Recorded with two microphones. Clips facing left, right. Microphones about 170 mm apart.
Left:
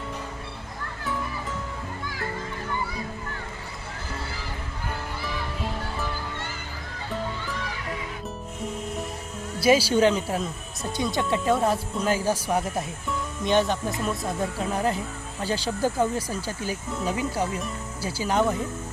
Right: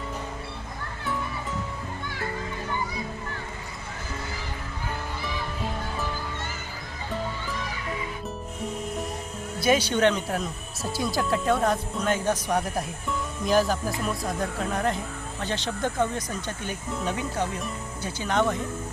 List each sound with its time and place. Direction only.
9.7 s speech: 5° left (ahead or behind)